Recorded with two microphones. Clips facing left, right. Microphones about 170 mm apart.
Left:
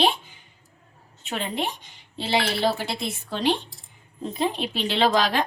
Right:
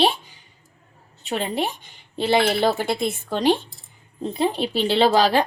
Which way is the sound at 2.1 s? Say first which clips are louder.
Right 6 dB; 55° right (ahead or behind).